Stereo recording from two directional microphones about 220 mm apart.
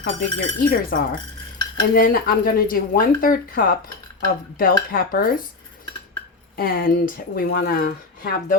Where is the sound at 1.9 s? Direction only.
40° left (ahead or behind).